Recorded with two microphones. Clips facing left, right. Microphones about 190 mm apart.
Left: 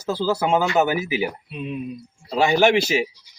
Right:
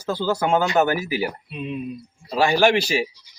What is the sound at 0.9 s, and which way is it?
Speech, 20° left (ahead or behind).